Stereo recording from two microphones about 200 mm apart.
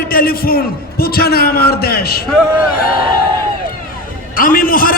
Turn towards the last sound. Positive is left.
turn(degrees=45)  # may be behind; listen again after turning